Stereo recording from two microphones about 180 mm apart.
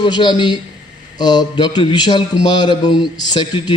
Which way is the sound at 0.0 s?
25° left (ahead or behind).